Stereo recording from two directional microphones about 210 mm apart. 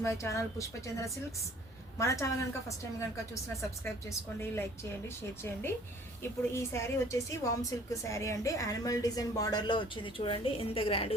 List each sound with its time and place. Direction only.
0.0 s a woman's voice: 15° left (ahead or behind)